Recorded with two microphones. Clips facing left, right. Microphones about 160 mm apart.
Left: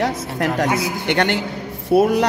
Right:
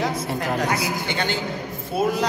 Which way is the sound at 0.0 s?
80° left.